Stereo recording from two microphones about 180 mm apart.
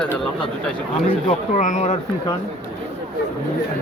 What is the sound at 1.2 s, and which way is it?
Speech, 45° left (ahead or behind).